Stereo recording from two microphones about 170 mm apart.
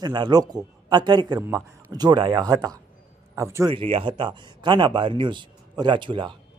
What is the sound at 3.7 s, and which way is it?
Speech, 30° right (ahead or behind).